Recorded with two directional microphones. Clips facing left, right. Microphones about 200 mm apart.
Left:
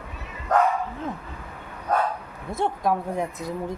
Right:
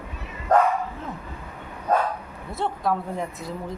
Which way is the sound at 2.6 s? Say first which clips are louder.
Left 1 dB; 15° left (ahead or behind).